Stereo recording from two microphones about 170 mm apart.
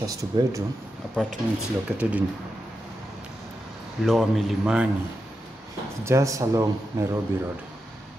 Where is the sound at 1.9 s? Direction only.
5° right (ahead or behind).